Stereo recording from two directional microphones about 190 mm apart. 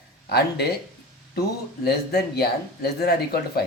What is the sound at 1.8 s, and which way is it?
Speech, 60° left (ahead or behind).